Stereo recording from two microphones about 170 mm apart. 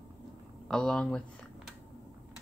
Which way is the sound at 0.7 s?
5° left (ahead or behind).